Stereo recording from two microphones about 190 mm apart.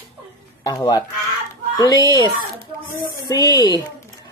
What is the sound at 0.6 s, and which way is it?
Speech, 20° left (ahead or behind).